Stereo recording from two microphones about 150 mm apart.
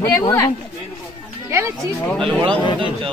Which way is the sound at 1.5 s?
20° right (ahead or behind).